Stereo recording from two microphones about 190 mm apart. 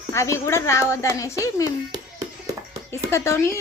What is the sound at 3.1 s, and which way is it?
Speech, 15° left (ahead or behind).